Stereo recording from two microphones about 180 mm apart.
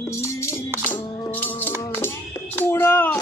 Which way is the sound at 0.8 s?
10° left (ahead or behind).